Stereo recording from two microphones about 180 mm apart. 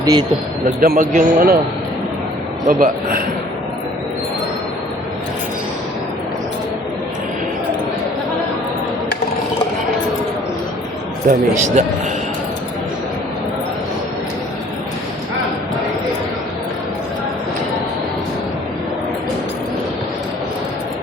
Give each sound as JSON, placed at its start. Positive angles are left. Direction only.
{"t": 0.0, "sound": "speech", "side_deg": -20}
{"t": 0.8, "sound": "speech", "side_deg": -50}
{"t": 2.6, "sound": "speech", "side_deg": -50}
{"t": 11.3, "sound": "speech", "side_deg": -45}